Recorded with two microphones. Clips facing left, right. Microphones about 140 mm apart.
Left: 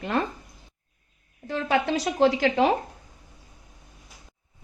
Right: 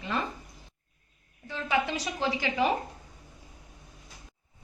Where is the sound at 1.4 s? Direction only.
80° left.